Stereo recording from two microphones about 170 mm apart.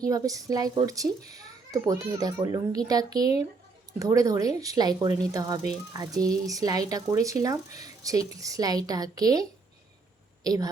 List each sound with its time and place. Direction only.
0.1 s a woman's voice: 20° right (ahead or behind)